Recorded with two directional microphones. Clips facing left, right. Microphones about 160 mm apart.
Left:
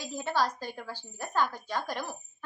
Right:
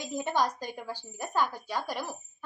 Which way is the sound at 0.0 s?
20° right (ahead or behind).